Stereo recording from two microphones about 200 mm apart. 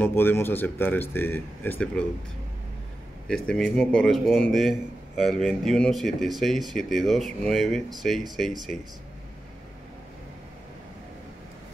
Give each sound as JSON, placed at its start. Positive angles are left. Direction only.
{"t": 0.0, "sound": "speech", "side_deg": 10}
{"t": 3.3, "sound": "a man's voice", "side_deg": 5}